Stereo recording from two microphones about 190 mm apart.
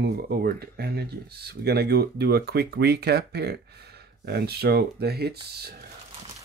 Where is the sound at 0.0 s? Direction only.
55° right (ahead or behind).